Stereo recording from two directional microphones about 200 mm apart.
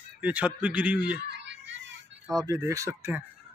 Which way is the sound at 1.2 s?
60° right (ahead or behind).